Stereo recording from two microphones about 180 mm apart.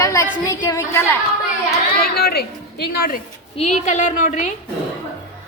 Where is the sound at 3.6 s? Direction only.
40° left (ahead or behind).